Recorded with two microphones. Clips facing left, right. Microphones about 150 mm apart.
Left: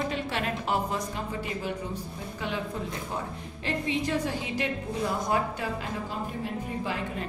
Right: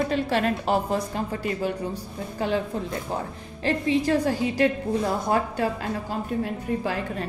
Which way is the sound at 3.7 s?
35° right (ahead or behind).